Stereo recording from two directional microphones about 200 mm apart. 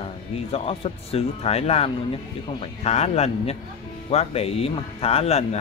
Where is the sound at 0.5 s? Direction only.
30° left (ahead or behind).